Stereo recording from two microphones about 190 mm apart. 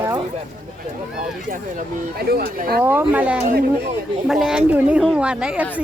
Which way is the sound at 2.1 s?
55° right (ahead or behind).